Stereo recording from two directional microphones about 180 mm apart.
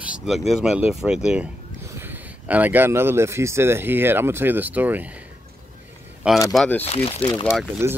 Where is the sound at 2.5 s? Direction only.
10° right (ahead or behind).